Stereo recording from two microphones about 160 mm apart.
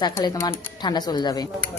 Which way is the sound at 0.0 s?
25° left (ahead or behind).